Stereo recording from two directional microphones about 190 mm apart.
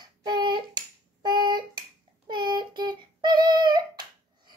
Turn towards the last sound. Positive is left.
turn(degrees=-20)  # may be behind; listen again after turning